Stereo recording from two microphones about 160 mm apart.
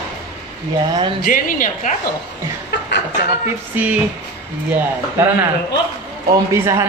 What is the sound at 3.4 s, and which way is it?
Speech, 10° right (ahead or behind).